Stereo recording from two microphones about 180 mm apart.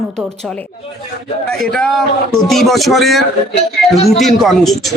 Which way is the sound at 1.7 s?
Centre (ahead or behind).